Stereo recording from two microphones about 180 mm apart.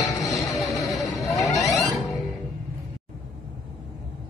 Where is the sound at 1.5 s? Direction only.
20° left (ahead or behind).